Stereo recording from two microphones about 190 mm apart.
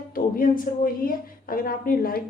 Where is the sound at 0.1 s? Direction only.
50° left (ahead or behind).